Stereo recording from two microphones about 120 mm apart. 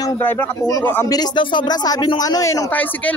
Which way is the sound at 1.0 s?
35° left (ahead or behind).